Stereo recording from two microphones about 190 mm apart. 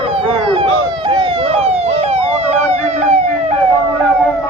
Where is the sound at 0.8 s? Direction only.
25° right (ahead or behind).